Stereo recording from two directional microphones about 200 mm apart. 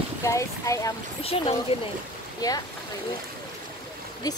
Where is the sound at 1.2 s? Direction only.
30° left (ahead or behind).